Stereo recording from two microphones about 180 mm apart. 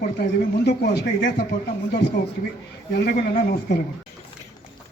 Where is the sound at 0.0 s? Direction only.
65° left (ahead or behind).